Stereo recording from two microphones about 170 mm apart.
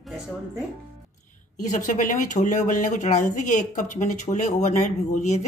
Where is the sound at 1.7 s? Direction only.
50° left (ahead or behind).